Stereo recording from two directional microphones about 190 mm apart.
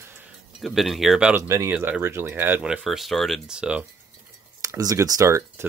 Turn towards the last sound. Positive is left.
turn(degrees=-15)  # may be behind; listen again after turning